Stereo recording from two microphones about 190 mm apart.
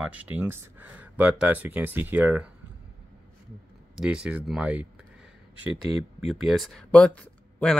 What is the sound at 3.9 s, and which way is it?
Speech, 5° right (ahead or behind).